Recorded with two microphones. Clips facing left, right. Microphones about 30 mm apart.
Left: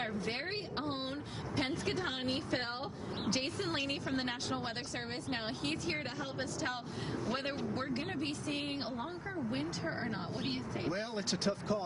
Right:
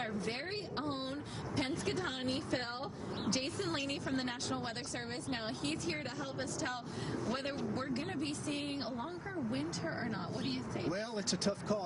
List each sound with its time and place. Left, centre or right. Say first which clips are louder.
0.0 s a sound: left 1 dB; left
1.6 s a woman's voice: left 1 dB; centre
7.2 s a woman's voice: left 1 dB; left